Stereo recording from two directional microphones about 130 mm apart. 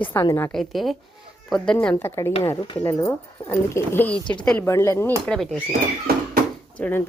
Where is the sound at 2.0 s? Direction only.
20° left (ahead or behind).